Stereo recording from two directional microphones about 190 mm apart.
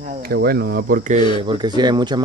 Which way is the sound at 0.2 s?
55° right (ahead or behind).